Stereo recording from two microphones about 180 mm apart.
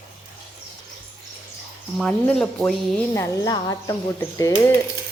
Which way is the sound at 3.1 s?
15° left (ahead or behind).